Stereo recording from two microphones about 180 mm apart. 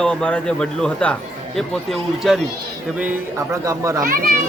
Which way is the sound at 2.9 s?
10° right (ahead or behind).